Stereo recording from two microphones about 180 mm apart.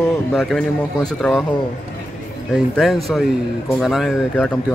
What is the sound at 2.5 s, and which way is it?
Speech, centre (ahead or behind).